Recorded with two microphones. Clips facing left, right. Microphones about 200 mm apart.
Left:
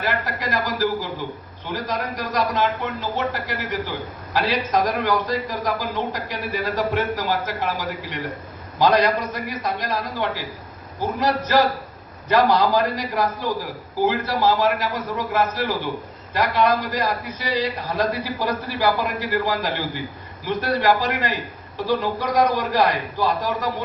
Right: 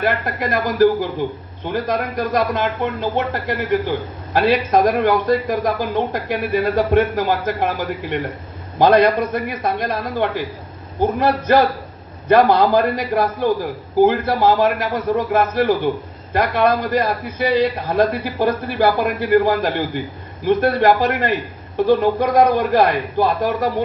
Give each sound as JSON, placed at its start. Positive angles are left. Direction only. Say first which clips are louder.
{"t": 0.0, "sound": "a man's voice", "louder": "right 5 dB", "side_deg": -55}